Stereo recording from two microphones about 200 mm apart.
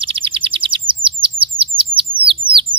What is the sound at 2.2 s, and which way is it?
Bird, 25° right (ahead or behind).